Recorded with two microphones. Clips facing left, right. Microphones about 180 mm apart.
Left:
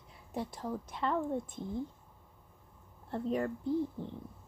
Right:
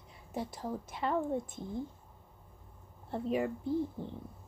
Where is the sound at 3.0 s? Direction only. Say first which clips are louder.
Right 1 dB; 5° right (ahead or behind).